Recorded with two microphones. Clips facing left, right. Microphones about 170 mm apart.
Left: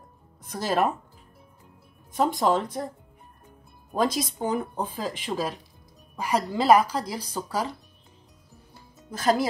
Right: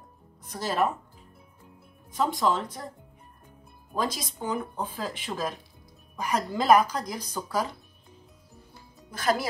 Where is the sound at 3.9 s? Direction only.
50° left (ahead or behind).